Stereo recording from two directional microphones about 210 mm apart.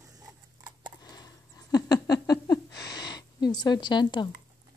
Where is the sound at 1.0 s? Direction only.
20° left (ahead or behind).